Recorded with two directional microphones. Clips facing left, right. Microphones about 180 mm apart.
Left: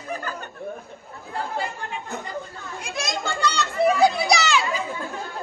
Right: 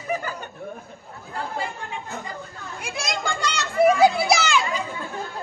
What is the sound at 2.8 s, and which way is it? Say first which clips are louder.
Children playing: even; 10° right (ahead or behind).